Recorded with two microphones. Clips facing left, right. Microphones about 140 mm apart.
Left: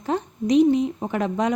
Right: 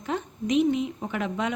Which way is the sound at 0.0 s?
35° left (ahead or behind).